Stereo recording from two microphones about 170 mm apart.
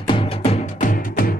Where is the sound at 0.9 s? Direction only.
55° left (ahead or behind).